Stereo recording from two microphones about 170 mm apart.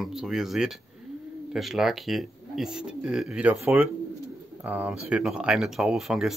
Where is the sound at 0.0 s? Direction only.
5° right (ahead or behind).